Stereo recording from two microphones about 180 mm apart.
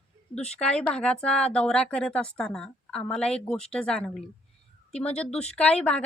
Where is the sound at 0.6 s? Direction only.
5° left (ahead or behind).